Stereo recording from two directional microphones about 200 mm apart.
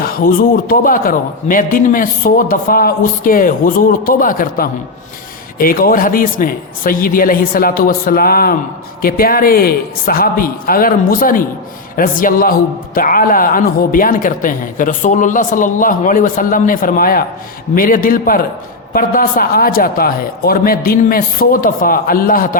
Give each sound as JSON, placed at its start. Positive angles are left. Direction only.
{"t": 0.0, "sound": "a man's voice", "side_deg": 45}